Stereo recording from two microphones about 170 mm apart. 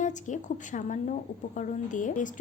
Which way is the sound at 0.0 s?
45° left (ahead or behind).